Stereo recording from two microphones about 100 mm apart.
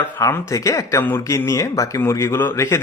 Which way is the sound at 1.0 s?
20° left (ahead or behind).